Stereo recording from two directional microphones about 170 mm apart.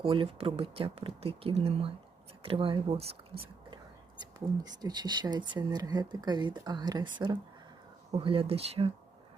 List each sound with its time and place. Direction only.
0.0 s speech: 30° right (ahead or behind)
4.2 s speech: 25° right (ahead or behind)